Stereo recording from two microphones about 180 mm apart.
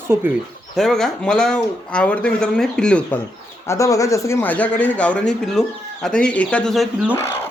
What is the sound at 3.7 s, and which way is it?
Speech, 20° left (ahead or behind).